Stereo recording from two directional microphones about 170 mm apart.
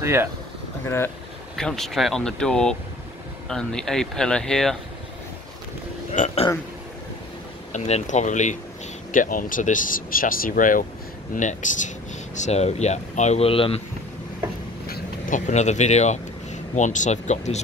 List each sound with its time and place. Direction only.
0.0 s speech: 15° right (ahead or behind)
0.8 s speech: 15° left (ahead or behind)
1.6 s speech: 5° left (ahead or behind)
6.1 s speech: 45° left (ahead or behind)
7.7 s speech: 45° left (ahead or behind)
14.9 s speech: 50° left (ahead or behind)